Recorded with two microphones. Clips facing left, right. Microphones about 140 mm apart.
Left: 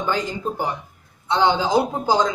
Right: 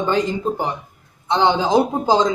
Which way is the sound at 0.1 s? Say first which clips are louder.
Right 4 dB; 20° right (ahead or behind).